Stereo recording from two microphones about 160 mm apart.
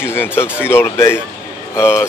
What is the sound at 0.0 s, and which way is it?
A man's voice, 15° left (ahead or behind).